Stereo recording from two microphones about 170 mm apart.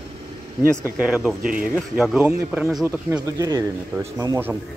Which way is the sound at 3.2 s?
20° right (ahead or behind).